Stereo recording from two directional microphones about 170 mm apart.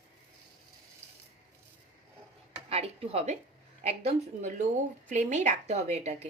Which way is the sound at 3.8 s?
40° right (ahead or behind).